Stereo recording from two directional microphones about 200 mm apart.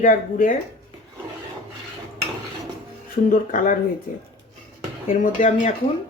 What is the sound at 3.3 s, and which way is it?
Speech, 40° left (ahead or behind).